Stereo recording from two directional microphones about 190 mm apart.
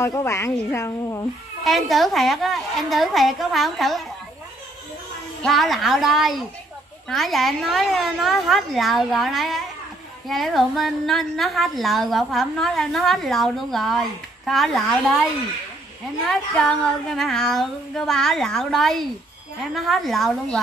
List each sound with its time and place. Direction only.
0.0 s a woman's voice: 15° left (ahead or behind)
1.6 s a woman's voice: centre (ahead or behind)
5.4 s a woman's voice: centre (ahead or behind)
16.3 s a woman's voice: 5° left (ahead or behind)